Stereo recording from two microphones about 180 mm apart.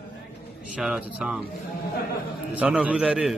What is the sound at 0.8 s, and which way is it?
Speech, 5° right (ahead or behind).